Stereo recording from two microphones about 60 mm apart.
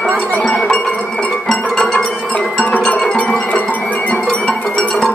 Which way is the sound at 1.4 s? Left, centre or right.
Centre.